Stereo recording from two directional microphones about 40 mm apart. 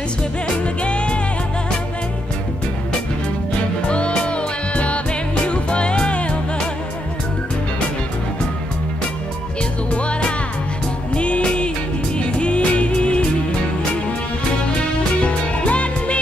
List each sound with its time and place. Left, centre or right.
0.8 s music: left
3.8 s music: left
9.8 s music: left
15.1 s music: left